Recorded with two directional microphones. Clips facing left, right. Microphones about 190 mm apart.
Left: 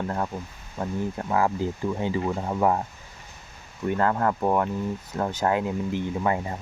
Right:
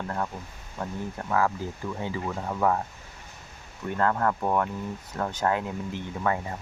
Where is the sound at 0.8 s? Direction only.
15° left (ahead or behind).